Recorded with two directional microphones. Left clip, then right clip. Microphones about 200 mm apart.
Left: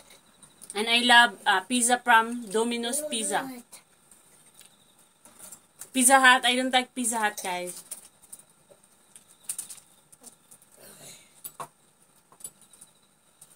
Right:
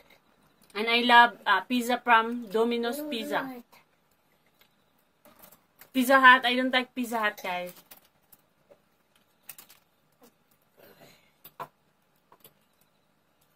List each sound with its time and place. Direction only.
0.7 s a woman's voice: 15° left (ahead or behind)
5.9 s a woman's voice: 15° left (ahead or behind)